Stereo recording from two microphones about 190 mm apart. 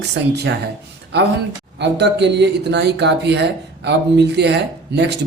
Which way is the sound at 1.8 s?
65° right (ahead or behind).